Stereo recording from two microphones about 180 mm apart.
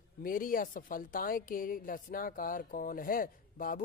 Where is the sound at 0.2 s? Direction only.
50° left (ahead or behind).